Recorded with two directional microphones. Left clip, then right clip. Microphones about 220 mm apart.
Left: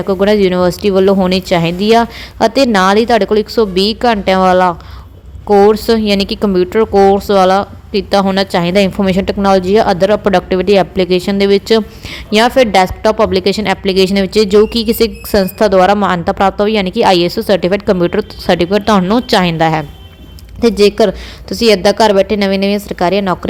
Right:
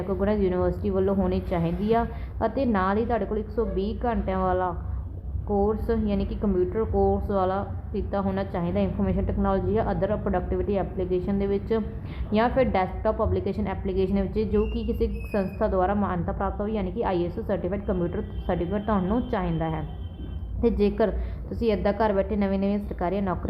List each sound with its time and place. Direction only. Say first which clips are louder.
0.1 s a woman's voice: left 15 dB; 35° left (ahead or behind)
20.6 s a woman's voice: left 14 dB; 35° left (ahead or behind)